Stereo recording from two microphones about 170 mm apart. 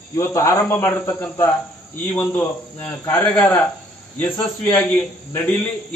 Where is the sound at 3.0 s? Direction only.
15° left (ahead or behind).